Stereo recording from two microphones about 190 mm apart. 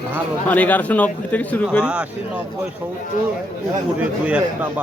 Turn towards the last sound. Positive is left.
turn(degrees=-5)  # may be behind; listen again after turning